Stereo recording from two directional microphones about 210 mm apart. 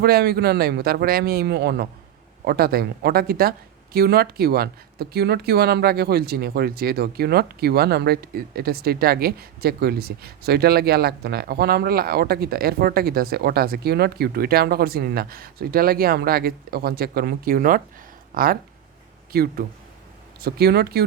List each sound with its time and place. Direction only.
0.0 s speech: 50° right (ahead or behind)